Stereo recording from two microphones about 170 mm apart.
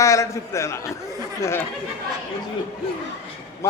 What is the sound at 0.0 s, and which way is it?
A man's voice, 20° left (ahead or behind).